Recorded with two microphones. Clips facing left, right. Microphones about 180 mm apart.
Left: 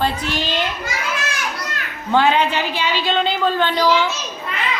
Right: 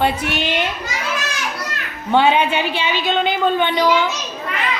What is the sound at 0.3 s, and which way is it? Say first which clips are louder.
Speech: right 1 dB; 20° right (ahead or behind).